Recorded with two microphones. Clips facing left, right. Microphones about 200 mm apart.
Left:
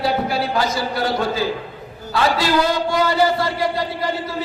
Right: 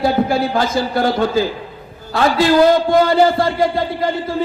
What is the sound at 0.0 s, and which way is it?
A man's voice, 50° right (ahead or behind).